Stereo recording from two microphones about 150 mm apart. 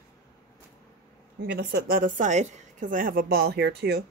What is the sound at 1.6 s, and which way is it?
A woman's voice, 85° right.